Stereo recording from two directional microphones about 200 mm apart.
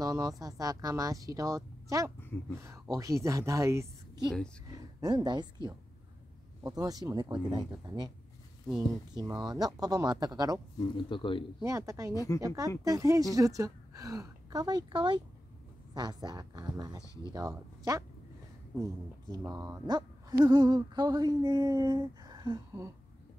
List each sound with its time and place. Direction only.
0.0 s a woman's voice: 15° right (ahead or behind)
10.8 s speech: 25° left (ahead or behind)
11.6 s a woman's voice: 15° right (ahead or behind)
12.1 s speech: 15° left (ahead or behind)
12.4 s a woman's voice: 15° right (ahead or behind)
17.0 s speech: 15° left (ahead or behind)
17.3 s a woman's voice: 15° right (ahead or behind)
19.3 s speech: 15° right (ahead or behind)